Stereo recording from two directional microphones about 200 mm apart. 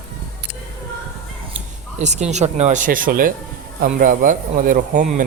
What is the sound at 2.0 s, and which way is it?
Speech, 35° right (ahead or behind).